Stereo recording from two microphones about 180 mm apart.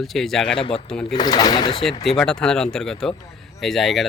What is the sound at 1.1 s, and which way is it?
Speech, 20° left (ahead or behind).